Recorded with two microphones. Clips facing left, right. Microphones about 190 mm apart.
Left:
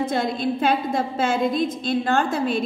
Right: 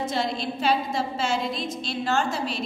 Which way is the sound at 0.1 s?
50° left (ahead or behind).